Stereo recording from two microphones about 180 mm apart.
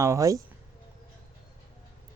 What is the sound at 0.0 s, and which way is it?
Speech, 15° right (ahead or behind).